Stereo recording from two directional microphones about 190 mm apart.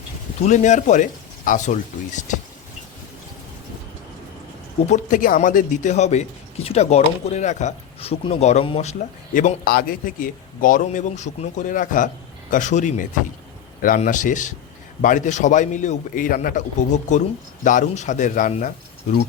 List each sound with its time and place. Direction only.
0.4 s speech: 40° left (ahead or behind)
4.9 s speech: 45° left (ahead or behind)